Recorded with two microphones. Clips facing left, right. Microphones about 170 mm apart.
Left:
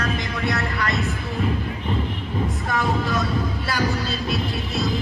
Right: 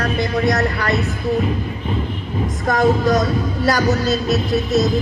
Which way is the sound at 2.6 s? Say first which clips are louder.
Right 11 dB; 40° right (ahead or behind).